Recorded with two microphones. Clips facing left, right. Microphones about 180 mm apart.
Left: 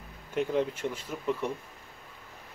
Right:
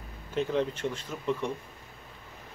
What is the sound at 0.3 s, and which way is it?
Speech, 10° left (ahead or behind).